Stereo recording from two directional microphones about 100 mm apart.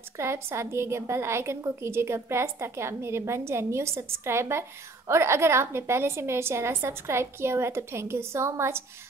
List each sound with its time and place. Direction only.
0.2 s a woman's voice: 25° right (ahead or behind)